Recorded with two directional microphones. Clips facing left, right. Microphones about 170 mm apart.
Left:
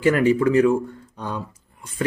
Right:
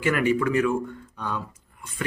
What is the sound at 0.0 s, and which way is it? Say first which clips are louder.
Speech: left 5 dB; 35° left (ahead or behind).